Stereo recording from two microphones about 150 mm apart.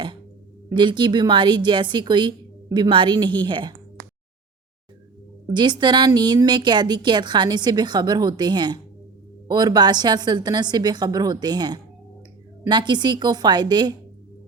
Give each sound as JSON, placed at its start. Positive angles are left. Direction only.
{"t": 0.7, "sound": "a woman's voice", "side_deg": -30}
{"t": 5.5, "sound": "a woman's voice", "side_deg": -30}